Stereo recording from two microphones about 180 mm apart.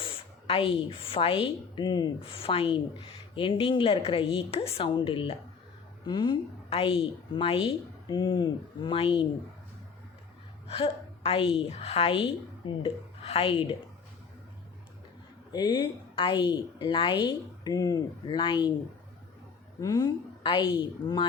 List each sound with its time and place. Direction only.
0.0 s speech: 30° left (ahead or behind)
10.7 s a woman's voice: 30° left (ahead or behind)
15.5 s speech: 25° left (ahead or behind)
19.8 s a woman's voice: 20° left (ahead or behind)